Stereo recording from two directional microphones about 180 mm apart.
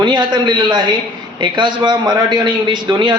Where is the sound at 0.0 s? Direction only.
25° right (ahead or behind).